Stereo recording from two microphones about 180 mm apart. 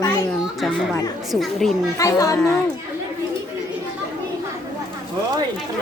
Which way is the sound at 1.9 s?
20° left (ahead or behind).